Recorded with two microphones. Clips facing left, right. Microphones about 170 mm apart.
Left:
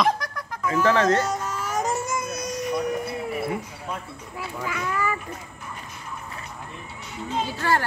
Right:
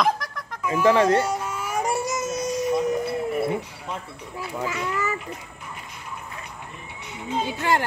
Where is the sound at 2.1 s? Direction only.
25° right (ahead or behind).